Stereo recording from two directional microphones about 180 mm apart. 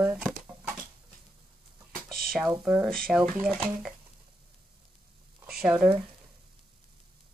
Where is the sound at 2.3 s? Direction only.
5° right (ahead or behind).